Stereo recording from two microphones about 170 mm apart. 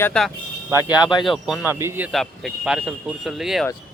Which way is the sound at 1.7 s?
15° right (ahead or behind).